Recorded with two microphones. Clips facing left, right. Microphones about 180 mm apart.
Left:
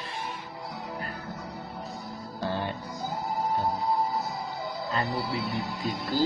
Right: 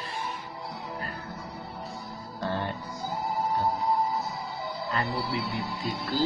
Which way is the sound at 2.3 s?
5° left (ahead or behind).